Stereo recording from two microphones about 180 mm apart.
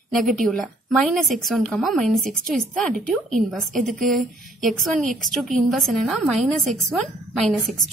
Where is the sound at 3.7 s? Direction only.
45° right (ahead or behind).